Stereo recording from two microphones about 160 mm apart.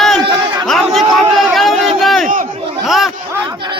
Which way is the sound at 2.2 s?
55° right (ahead or behind).